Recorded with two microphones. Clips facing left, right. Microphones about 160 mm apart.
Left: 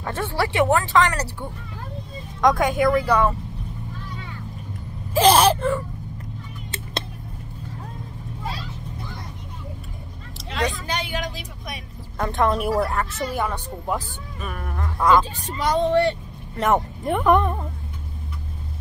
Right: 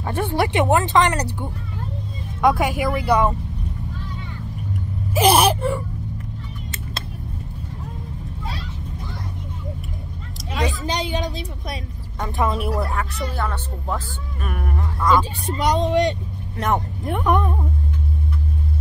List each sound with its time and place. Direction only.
0.0 s speech: 15° right (ahead or behind)
5.1 s speech: 10° right (ahead or behind)
10.5 s a woman's voice: 20° right (ahead or behind)
12.2 s speech: 5° right (ahead or behind); by 14.0 s 10° left (ahead or behind)
14.4 s speech: 5° right (ahead or behind)
16.5 s speech: centre (ahead or behind)